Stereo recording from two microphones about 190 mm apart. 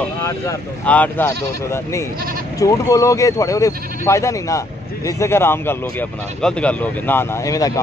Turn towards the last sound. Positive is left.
turn(degrees=20)  # may be behind; listen again after turning